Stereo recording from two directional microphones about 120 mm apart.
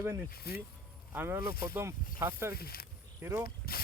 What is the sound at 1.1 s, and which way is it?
Speech, 20° right (ahead or behind).